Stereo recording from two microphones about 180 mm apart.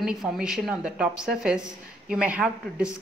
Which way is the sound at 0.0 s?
Centre (ahead or behind).